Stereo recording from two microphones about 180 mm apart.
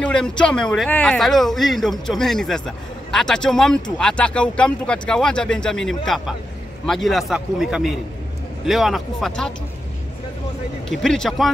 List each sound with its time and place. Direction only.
0.0 s speech: 5° left (ahead or behind)
10.9 s speech: 5° left (ahead or behind)